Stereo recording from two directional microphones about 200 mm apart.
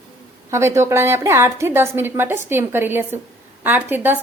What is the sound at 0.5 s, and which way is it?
A woman's voice, 15° right (ahead or behind).